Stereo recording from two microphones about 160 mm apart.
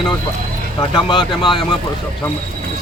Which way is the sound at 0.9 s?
30° left (ahead or behind).